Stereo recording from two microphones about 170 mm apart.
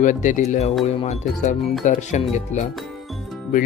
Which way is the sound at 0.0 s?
45° left (ahead or behind).